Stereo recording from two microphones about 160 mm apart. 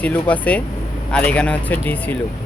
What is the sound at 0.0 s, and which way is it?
Speech, 10° left (ahead or behind).